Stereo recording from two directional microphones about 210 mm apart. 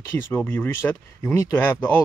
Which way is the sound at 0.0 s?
10° left (ahead or behind).